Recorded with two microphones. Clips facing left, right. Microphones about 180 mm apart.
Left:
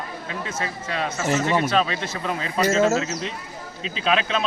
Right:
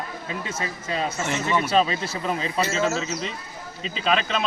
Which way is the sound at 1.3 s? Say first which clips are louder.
Left 5 dB; 35° left (ahead or behind).